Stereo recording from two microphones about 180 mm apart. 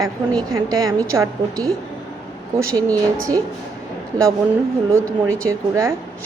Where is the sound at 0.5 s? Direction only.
20° right (ahead or behind).